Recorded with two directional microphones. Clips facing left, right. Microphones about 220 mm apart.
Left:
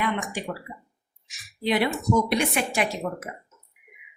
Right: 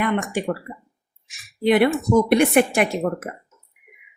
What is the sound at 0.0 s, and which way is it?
A woman's voice, 55° right (ahead or behind).